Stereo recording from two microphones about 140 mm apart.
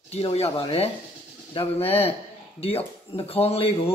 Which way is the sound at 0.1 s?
45° left (ahead or behind).